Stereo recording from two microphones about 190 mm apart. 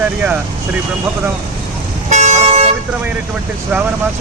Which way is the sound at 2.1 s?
35° right (ahead or behind).